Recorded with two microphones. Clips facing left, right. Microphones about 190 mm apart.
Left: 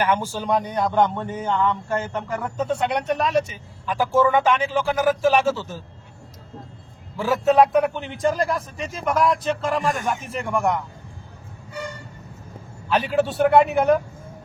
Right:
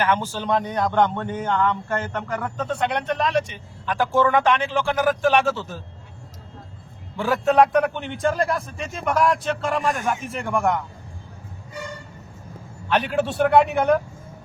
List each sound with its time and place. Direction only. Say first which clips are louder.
0.0 s a man's voice: even; 10° left (ahead or behind)
7.2 s a man's voice: left 1 dB; centre (ahead or behind)
12.9 s a man's voice: left 1 dB; centre (ahead or behind)